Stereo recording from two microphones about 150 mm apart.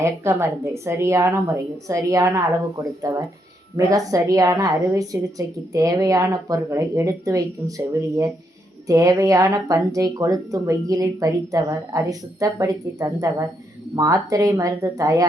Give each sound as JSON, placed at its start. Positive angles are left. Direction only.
{"t": 0.0, "sound": "a woman's voice", "side_deg": -15}